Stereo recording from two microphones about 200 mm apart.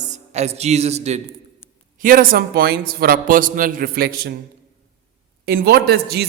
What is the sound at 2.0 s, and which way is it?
A man's voice, 45° right (ahead or behind).